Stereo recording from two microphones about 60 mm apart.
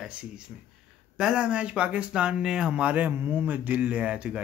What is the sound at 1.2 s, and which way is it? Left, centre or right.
Speech, centre.